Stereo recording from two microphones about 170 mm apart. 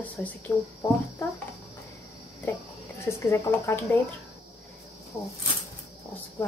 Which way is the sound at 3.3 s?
15° left (ahead or behind).